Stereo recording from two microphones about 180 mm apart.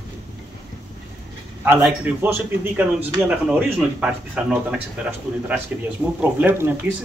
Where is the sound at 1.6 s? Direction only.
10° right (ahead or behind).